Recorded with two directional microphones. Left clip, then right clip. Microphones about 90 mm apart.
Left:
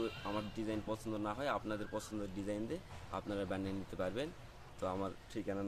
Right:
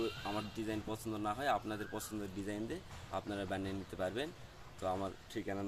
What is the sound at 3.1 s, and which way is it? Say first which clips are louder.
Speech: even; 40° left (ahead or behind).